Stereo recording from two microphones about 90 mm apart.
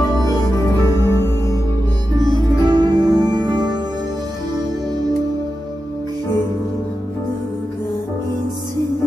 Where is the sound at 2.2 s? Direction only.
50° right (ahead or behind).